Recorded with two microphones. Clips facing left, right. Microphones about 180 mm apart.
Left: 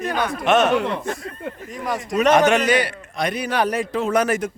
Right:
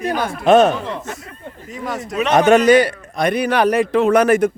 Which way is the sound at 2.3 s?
40° right (ahead or behind).